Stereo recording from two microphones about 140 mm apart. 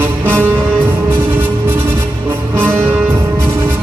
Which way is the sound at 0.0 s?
15° right (ahead or behind).